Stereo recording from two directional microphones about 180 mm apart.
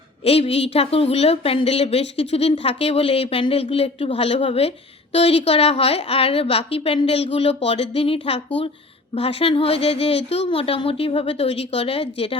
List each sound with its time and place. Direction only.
0.3 s a woman's voice: 35° left (ahead or behind)